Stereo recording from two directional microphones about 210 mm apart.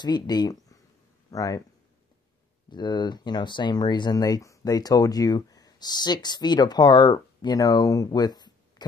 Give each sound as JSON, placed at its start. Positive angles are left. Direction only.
{"t": 0.0, "sound": "speech", "side_deg": 20}
{"t": 2.7, "sound": "speech", "side_deg": 20}